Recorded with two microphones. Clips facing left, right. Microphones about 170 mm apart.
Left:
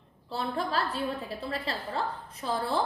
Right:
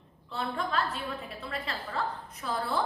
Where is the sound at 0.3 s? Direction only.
35° left (ahead or behind).